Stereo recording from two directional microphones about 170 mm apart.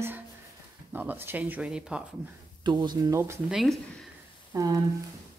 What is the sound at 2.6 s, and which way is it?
Speech, 25° right (ahead or behind).